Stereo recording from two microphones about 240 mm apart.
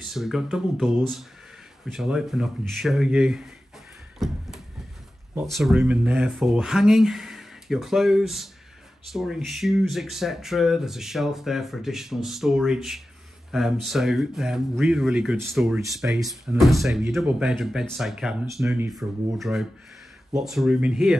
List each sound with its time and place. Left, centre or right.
0.0 s speech: centre
5.4 s speech: centre